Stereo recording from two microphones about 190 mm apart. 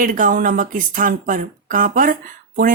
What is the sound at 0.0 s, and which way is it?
Speech, 45° right (ahead or behind).